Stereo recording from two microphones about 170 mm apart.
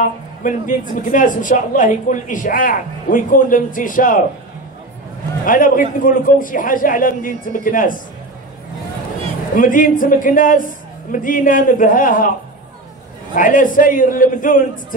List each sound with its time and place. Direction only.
0.4 s a man's voice: 50° left (ahead or behind)
5.4 s a man's voice: 55° left (ahead or behind)
9.6 s a man's voice: 55° left (ahead or behind)
13.3 s a man's voice: 55° left (ahead or behind)